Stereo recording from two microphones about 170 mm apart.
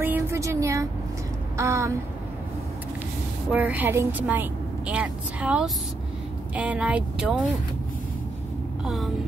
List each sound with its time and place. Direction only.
0.0 s a sound: 15° right (ahead or behind)
1.6 s a woman's voice: 15° right (ahead or behind)
3.5 s a woman's voice: 10° right (ahead or behind)
8.8 s vehicle: centre (ahead or behind)